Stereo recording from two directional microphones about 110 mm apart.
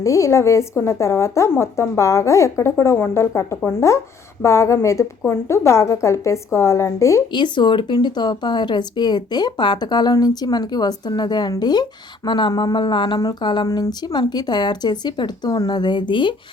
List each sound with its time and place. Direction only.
0.0 s speech: 30° left (ahead or behind)
7.3 s speech: 45° left (ahead or behind)